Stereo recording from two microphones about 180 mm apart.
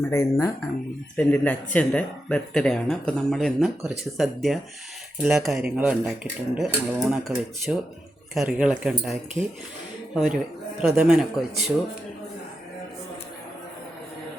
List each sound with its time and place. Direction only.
0.1 s speech: 15° left (ahead or behind); by 9.1 s centre (ahead or behind)
9.4 s speech: 15° right (ahead or behind)
10.2 s speech: centre (ahead or behind)